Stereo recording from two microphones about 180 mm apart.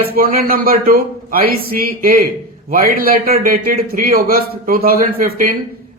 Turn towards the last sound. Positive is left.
turn(degrees=-55)  # may be behind; listen again after turning